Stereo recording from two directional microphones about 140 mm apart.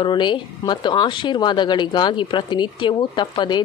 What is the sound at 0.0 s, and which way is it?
A woman's voice, 35° left (ahead or behind).